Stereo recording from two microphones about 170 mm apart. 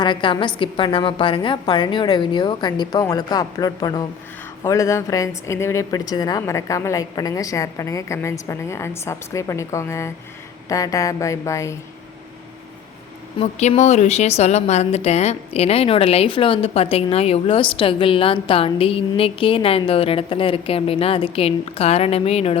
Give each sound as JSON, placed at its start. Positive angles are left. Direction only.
{"t": 0.0, "sound": "a woman's voice", "side_deg": 30}
{"t": 13.4, "sound": "speech", "side_deg": 40}